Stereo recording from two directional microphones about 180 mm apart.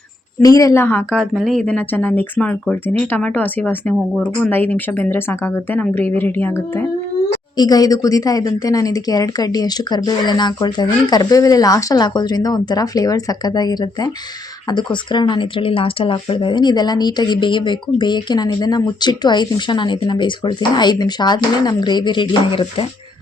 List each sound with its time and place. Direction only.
0.4 s speech: 20° left (ahead or behind)
7.5 s speech: 20° left (ahead or behind)